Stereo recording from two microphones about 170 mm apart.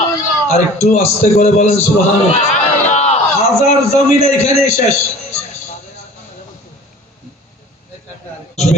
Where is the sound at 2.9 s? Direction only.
40° left (ahead or behind).